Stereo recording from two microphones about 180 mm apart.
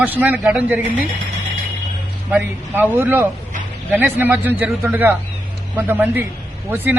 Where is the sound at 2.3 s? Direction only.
10° right (ahead or behind).